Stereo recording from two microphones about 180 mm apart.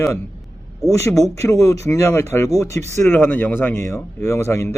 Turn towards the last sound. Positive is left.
turn(degrees=15)  # may be behind; listen again after turning